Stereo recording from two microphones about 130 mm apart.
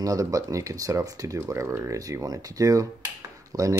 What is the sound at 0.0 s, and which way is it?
Speech, 25° right (ahead or behind).